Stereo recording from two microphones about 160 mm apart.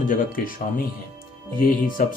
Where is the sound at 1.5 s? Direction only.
60° left (ahead or behind).